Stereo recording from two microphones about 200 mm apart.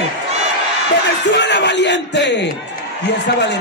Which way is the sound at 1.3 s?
60° left (ahead or behind).